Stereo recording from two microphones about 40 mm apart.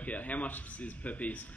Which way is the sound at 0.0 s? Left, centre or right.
Left.